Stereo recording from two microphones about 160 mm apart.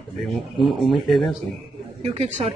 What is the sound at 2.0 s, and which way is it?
Speech, 40° right (ahead or behind).